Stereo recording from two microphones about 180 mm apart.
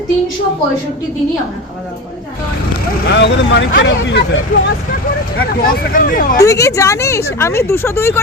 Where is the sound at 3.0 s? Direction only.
75° left (ahead or behind).